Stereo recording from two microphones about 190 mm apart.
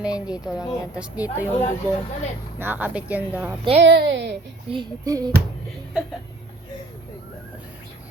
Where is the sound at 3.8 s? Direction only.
65° right (ahead or behind).